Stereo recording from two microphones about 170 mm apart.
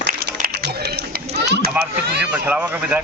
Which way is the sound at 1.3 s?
80° right.